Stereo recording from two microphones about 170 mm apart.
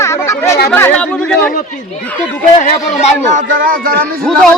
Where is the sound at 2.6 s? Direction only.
45° left (ahead or behind).